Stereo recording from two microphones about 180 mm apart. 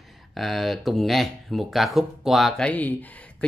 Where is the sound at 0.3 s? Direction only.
Centre (ahead or behind).